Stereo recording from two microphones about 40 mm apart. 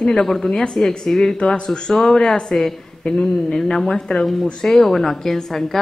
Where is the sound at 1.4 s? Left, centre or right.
Left.